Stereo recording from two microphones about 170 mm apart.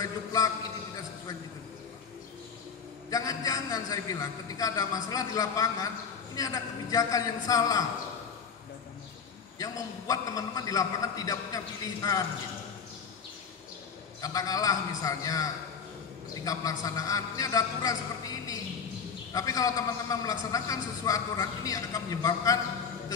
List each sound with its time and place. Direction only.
0.0 s a man's voice: 20° left (ahead or behind)
3.1 s a man's voice: 20° left (ahead or behind)
9.6 s a man's voice: 20° left (ahead or behind)
14.2 s a man's voice: 20° left (ahead or behind)